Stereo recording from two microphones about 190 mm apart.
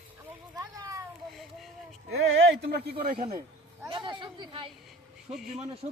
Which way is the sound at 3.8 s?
25° right (ahead or behind).